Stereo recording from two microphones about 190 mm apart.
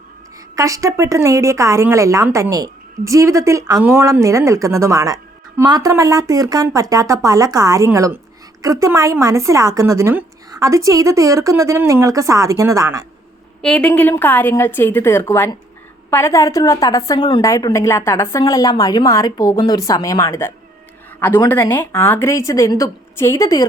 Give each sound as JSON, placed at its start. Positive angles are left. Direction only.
{"t": 0.5, "sound": "speech", "side_deg": -15}
{"t": 13.6, "sound": "a woman's voice", "side_deg": 5}